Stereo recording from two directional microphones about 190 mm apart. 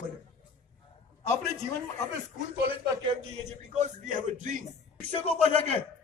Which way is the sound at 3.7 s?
40° right (ahead or behind).